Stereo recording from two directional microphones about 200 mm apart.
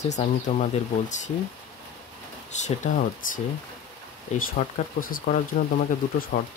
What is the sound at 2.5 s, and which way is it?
Speech, 35° left (ahead or behind).